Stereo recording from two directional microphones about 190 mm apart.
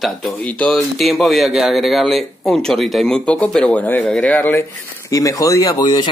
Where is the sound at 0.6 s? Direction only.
Centre (ahead or behind).